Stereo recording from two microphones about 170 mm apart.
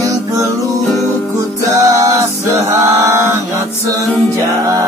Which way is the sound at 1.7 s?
20° right (ahead or behind).